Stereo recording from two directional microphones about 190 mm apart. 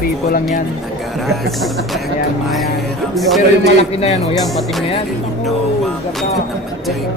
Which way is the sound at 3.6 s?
35° left (ahead or behind).